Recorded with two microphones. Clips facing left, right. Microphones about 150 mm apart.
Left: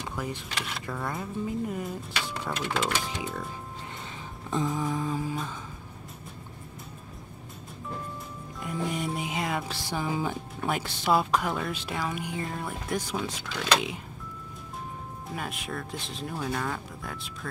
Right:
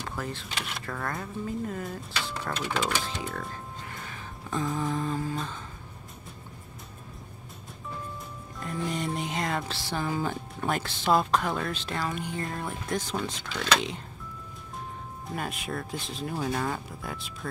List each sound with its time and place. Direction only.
0.2 s speech: 15° left (ahead or behind)
2.6 s speech: 15° right (ahead or behind)
3.0 s speech: 15° left (ahead or behind)
3.9 s music: 20° left (ahead or behind)
4.6 s speech: 5° left (ahead or behind)
8.5 s speech: 10° left (ahead or behind)
15.2 s speech: centre (ahead or behind)